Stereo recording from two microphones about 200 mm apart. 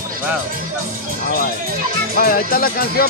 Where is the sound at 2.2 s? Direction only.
45° left (ahead or behind).